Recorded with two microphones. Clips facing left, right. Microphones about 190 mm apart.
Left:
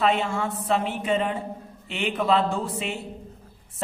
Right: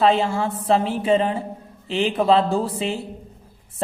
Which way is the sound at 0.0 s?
30° right (ahead or behind).